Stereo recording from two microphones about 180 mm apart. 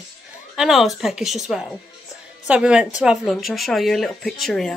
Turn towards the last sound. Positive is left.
turn(degrees=0)  # may be behind; listen again after turning